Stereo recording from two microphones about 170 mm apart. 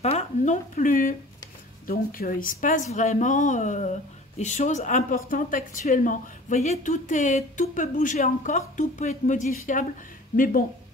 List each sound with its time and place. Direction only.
0.0 s speech: 40° left (ahead or behind); by 10.6 s 55° left (ahead or behind)